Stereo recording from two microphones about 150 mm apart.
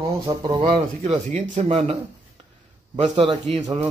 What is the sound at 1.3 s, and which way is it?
Speech, 50° right (ahead or behind).